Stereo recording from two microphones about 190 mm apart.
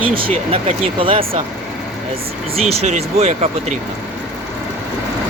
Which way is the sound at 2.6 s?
30° right (ahead or behind).